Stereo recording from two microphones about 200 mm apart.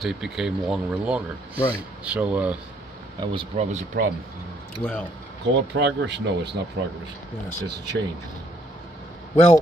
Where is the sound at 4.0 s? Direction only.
50° right (ahead or behind).